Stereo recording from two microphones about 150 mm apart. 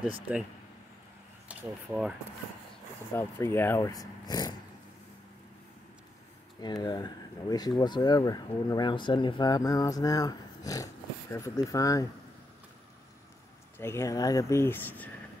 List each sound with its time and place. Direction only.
1.5 s speech: 5° right (ahead or behind)
3.2 s speech: 15° left (ahead or behind)
6.6 s speech: 30° left (ahead or behind)
13.7 s speech: 15° left (ahead or behind)